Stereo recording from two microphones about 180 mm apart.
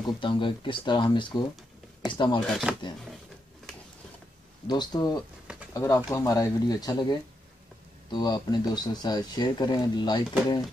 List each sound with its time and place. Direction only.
0.0 s speech: 30° left (ahead or behind)
2.4 s speech: centre (ahead or behind)
4.6 s speech: 25° left (ahead or behind)